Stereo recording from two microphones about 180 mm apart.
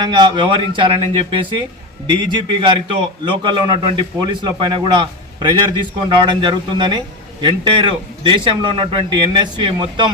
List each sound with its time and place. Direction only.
0.0 s a man's voice: 25° right (ahead or behind)